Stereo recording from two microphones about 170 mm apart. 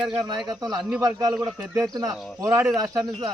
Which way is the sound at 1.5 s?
10° right (ahead or behind).